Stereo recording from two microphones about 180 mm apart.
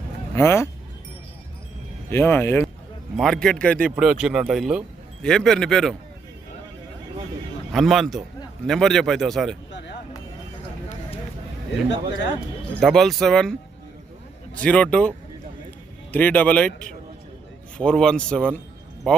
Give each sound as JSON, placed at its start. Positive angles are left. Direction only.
{"t": 0.3, "sound": "speech", "side_deg": 15}
{"t": 2.0, "sound": "speech", "side_deg": 10}
{"t": 3.2, "sound": "a man's voice", "side_deg": 0}
{"t": 7.7, "sound": "a man's voice", "side_deg": 0}
{"t": 9.7, "sound": "a sound", "side_deg": 75}
{"t": 12.8, "sound": "a man's voice", "side_deg": 0}
{"t": 16.1, "sound": "a man's voice", "side_deg": 10}